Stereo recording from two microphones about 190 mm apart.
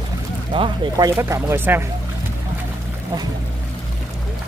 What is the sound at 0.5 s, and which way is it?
Speech, 25° right (ahead or behind).